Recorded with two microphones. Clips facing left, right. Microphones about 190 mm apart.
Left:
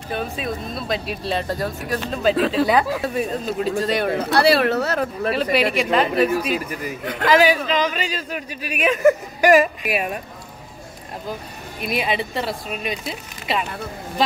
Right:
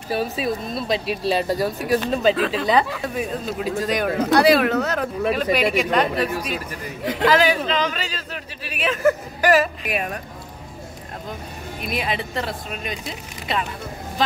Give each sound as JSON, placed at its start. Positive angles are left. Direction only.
{"t": 0.1, "sound": "a man's voice", "side_deg": -5}
{"t": 11.8, "sound": "speech", "side_deg": 5}